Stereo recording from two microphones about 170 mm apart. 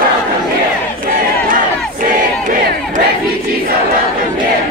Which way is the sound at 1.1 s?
55° right (ahead or behind).